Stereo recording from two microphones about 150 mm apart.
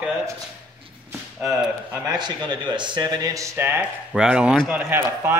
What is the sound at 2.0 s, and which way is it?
A man's voice, 30° right (ahead or behind).